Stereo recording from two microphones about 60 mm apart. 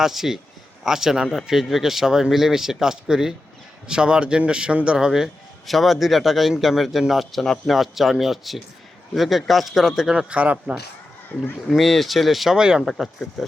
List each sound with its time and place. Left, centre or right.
0.0 s a man's voice: centre
7.8 s speech: centre; by 10.8 s right
11.3 s speech: left
11.8 s speech: centre
12.5 s a man's voice: centre
12.8 s speech: centre